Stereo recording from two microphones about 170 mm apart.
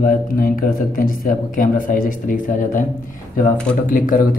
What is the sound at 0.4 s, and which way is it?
A man's voice, 55° left (ahead or behind).